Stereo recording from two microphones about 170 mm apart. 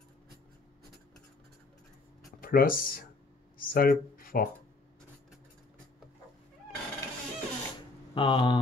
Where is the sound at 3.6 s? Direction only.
60° left (ahead or behind).